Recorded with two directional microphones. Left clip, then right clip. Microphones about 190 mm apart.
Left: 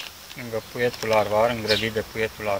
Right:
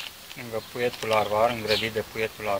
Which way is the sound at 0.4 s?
20° right (ahead or behind).